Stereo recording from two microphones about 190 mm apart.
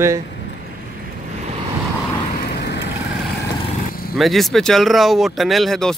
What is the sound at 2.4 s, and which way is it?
Vehicle, 60° left (ahead or behind).